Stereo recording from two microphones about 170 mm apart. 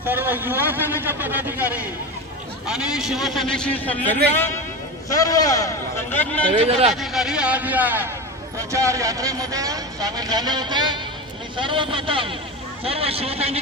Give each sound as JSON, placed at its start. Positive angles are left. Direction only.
{"t": 0.0, "sound": "a man's voice", "side_deg": -10}
{"t": 5.0, "sound": "a man's voice", "side_deg": 20}
{"t": 6.5, "sound": "speech", "side_deg": -35}
{"t": 6.9, "sound": "a man's voice", "side_deg": 0}